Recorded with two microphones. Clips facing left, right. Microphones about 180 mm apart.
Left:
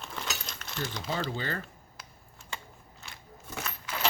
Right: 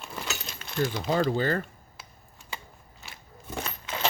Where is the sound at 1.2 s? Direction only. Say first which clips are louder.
Right 10 dB; 45° right (ahead or behind).